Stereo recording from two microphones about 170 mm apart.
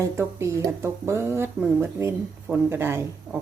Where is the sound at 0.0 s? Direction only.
15° right (ahead or behind).